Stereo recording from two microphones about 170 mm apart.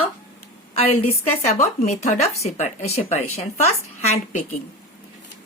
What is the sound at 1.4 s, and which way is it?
A woman's voice, 45° left (ahead or behind).